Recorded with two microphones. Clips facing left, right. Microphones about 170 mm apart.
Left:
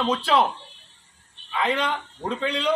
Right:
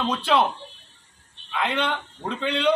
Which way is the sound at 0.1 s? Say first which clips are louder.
Even; centre (ahead or behind).